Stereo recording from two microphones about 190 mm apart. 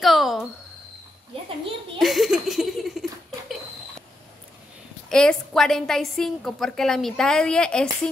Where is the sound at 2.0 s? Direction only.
Centre (ahead or behind).